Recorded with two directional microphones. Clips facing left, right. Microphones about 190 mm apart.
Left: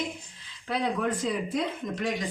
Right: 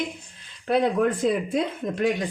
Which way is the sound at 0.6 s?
60° right (ahead or behind).